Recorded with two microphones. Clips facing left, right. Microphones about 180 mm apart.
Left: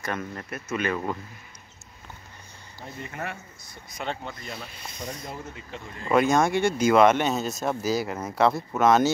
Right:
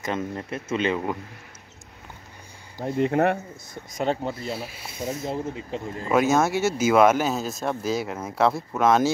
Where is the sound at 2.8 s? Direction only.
65° right (ahead or behind); by 4.5 s 30° right (ahead or behind).